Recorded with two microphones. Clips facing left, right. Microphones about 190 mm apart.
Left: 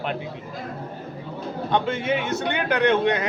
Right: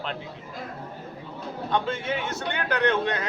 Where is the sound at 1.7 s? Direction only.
20° left (ahead or behind).